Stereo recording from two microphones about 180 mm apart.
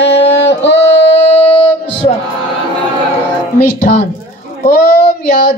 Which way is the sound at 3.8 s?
65° left (ahead or behind).